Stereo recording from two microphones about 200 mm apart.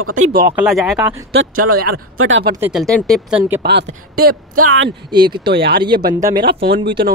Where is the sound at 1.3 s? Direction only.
80° right.